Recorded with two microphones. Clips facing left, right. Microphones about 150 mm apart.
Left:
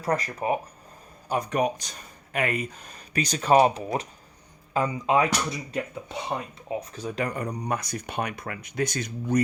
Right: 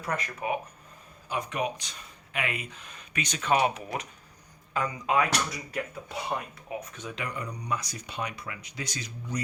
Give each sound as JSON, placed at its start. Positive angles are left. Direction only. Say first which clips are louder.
{"t": 0.0, "sound": "speech", "louder": "left 6 dB", "side_deg": 35}